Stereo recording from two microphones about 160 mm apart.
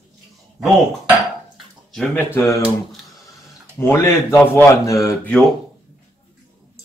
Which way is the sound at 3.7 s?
15° left (ahead or behind).